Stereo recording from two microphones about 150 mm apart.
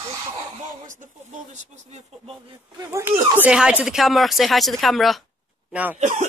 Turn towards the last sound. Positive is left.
turn(degrees=-55)  # may be behind; listen again after turning